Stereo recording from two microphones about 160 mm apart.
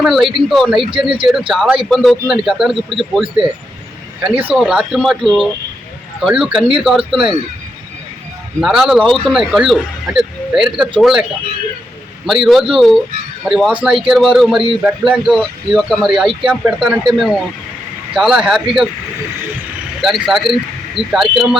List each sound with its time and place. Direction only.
0.0 s speech: centre (ahead or behind)
0.8 s speech: 35° right (ahead or behind)
1.3 s speech: centre (ahead or behind)
8.6 s speech: 5° right (ahead or behind)
20.0 s speech: centre (ahead or behind)